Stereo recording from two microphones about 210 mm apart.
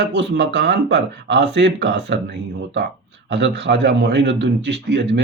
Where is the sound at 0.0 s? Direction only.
55° right (ahead or behind).